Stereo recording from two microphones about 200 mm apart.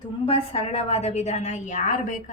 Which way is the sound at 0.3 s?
30° left (ahead or behind).